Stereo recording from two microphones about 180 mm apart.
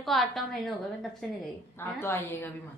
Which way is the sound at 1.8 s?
15° left (ahead or behind).